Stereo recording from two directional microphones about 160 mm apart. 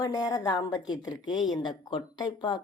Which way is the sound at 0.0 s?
25° left (ahead or behind).